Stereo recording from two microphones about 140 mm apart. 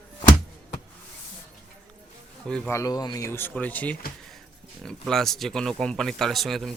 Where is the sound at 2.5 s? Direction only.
5° left (ahead or behind).